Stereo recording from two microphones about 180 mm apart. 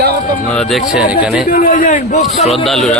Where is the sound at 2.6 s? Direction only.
Centre (ahead or behind).